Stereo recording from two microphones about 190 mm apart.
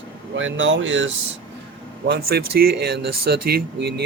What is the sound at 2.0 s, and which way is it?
Speech, 55° right (ahead or behind).